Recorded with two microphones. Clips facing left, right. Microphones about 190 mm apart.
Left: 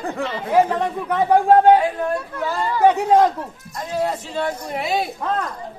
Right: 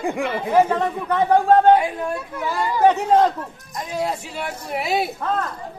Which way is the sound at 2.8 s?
10° left (ahead or behind).